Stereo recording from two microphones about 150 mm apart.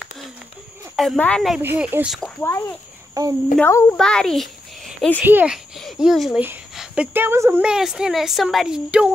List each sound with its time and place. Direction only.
0.9 s a woman's voice: 5° left (ahead or behind)
1.6 s speech: 15° right (ahead or behind)
3.2 s speech: 20° right (ahead or behind)
3.6 s a woman's voice: 15° left (ahead or behind)
3.9 s a child's voice: 5° left (ahead or behind)
5.2 s speech: 10° right (ahead or behind)
6.7 s a sound: 5° right (ahead or behind)
7.2 s speech: 15° right (ahead or behind)
7.6 s a woman's voice: 5° right (ahead or behind)